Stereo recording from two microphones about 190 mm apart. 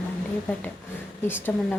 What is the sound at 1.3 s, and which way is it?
Speech, 10° left (ahead or behind).